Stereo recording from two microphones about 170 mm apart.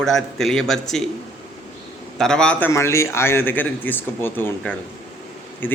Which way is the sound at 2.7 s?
15° left (ahead or behind).